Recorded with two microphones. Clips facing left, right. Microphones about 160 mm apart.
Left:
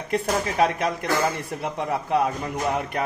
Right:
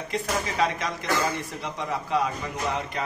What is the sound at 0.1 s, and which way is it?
A man's voice, 55° left (ahead or behind).